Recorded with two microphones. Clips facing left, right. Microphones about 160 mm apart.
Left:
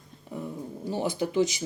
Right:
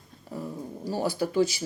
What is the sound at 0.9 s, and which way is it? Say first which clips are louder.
Speech: right 1 dB; 20° left (ahead or behind).